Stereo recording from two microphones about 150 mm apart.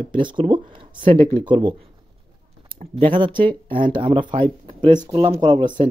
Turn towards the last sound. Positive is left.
turn(degrees=-30)  # may be behind; listen again after turning